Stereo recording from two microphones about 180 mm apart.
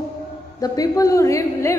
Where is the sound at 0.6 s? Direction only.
20° left (ahead or behind).